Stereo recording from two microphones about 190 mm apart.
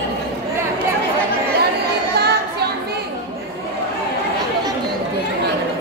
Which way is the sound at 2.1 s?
60° right (ahead or behind).